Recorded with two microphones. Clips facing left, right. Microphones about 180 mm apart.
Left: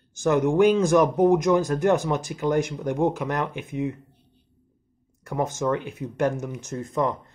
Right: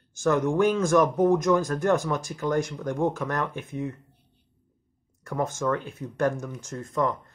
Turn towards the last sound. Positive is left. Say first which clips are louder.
# left 2 dB
turn(degrees=20)  # may be behind; listen again after turning